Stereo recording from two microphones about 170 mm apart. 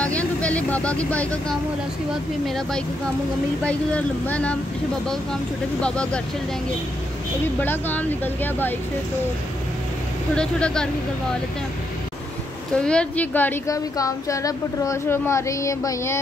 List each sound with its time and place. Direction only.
0.0 s a woman's voice: 10° left (ahead or behind)
7.6 s a woman's voice: 10° left (ahead or behind)
10.3 s speech: 5° left (ahead or behind)
12.7 s a woman's voice: 5° left (ahead or behind)